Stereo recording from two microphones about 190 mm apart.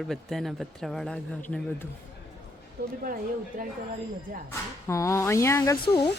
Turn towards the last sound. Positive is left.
turn(degrees=20)  # may be behind; listen again after turning